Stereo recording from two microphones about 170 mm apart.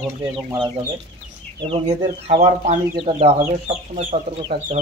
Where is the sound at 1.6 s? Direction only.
30° right (ahead or behind).